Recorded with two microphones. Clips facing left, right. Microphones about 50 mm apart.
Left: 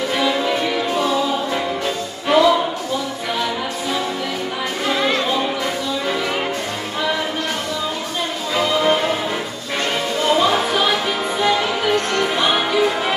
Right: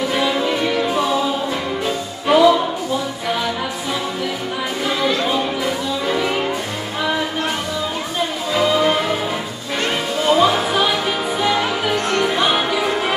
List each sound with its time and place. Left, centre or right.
0.1 s music: centre
2.2 s music: centre
6.0 s music: centre
8.5 s music: centre
10.2 s music: centre